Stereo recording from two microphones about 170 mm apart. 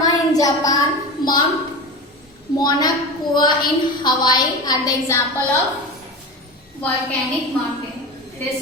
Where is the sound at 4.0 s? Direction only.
25° left (ahead or behind).